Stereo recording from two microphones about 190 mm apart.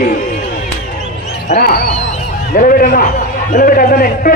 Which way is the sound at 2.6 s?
45° left (ahead or behind).